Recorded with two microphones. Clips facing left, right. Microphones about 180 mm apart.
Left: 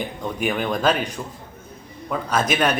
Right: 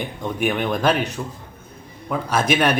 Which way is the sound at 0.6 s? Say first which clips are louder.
Even; 5° right (ahead or behind).